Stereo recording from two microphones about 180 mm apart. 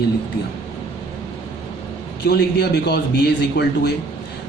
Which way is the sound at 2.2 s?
65° left (ahead or behind).